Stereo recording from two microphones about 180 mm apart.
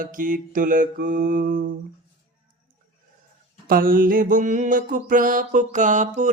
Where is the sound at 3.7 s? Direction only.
50° right (ahead or behind).